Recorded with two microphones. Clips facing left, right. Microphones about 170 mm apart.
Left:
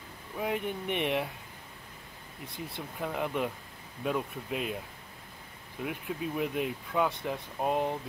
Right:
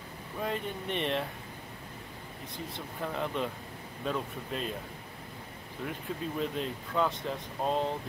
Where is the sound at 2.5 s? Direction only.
10° left (ahead or behind).